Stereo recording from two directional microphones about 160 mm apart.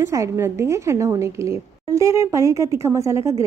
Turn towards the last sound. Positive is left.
turn(degrees=-20)  # may be behind; listen again after turning